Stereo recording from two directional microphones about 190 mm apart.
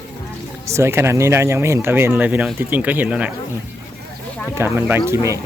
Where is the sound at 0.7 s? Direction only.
15° right (ahead or behind).